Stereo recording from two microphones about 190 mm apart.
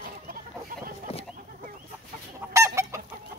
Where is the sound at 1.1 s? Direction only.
30° left (ahead or behind).